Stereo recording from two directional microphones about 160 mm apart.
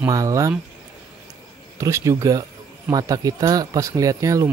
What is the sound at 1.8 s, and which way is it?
Speech, 20° right (ahead or behind).